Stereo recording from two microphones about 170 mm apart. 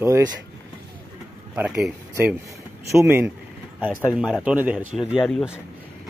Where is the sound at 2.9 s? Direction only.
15° right (ahead or behind); by 5.6 s centre (ahead or behind).